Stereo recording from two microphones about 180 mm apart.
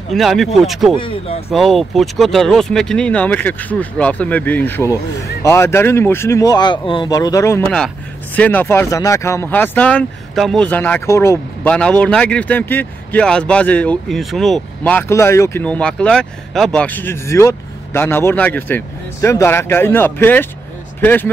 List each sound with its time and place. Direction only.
0.1 s speech: centre (ahead or behind)
0.9 s speech: 30° left (ahead or behind)
1.5 s speech: centre (ahead or behind)